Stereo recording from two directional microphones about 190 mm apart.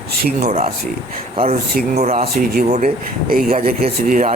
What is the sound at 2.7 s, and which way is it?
Speech, 45° right (ahead or behind).